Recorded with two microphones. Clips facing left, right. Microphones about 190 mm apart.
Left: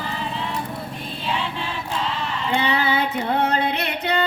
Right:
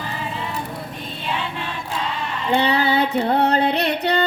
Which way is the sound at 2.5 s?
35° right (ahead or behind).